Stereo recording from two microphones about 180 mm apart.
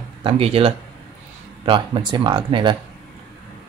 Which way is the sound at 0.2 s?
30° right (ahead or behind).